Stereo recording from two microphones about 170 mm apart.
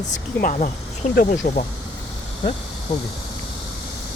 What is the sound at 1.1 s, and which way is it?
Speech, 55° left (ahead or behind).